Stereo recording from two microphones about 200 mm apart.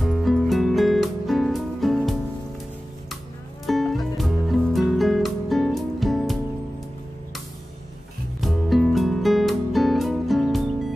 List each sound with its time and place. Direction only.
0.0 s music: centre (ahead or behind)
3.6 s music: centre (ahead or behind)
8.4 s music: centre (ahead or behind)